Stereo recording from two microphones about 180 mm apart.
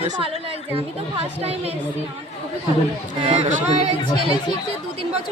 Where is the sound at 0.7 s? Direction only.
35° right (ahead or behind).